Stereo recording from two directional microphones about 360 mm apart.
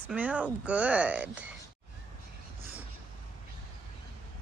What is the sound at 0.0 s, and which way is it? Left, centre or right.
Speech, centre.